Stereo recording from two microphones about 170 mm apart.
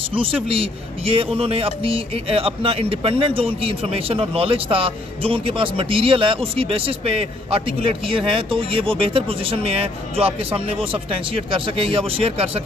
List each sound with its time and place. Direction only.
0.1 s a man's voice: 30° right (ahead or behind)